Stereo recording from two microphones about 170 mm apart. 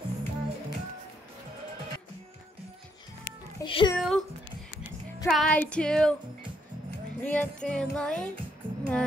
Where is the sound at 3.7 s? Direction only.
30° left (ahead or behind).